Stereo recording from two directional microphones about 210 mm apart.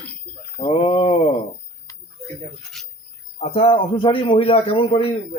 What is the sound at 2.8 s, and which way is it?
Cricket, centre (ahead or behind).